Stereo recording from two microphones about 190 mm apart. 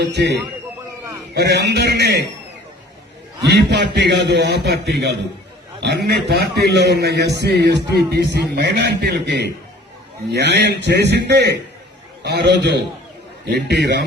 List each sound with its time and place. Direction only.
0.0 s a man's voice: 65° right (ahead or behind)
3.4 s a man's voice: 60° right (ahead or behind)